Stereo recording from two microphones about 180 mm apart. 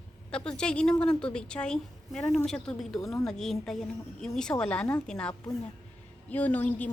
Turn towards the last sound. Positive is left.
turn(degrees=10)  # may be behind; listen again after turning